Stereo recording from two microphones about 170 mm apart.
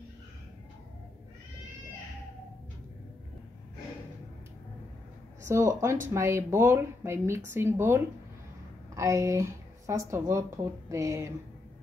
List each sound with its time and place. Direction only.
5.5 s speech: 15° right (ahead or behind)